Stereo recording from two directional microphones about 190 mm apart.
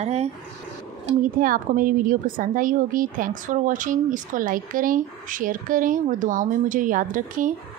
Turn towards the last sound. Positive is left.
turn(degrees=-45)  # may be behind; listen again after turning